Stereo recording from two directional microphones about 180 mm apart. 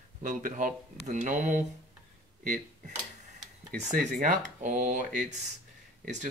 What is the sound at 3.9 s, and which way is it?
Speech, 50° right (ahead or behind).